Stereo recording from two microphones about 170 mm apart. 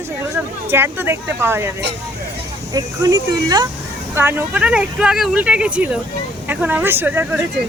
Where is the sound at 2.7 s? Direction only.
20° right (ahead or behind).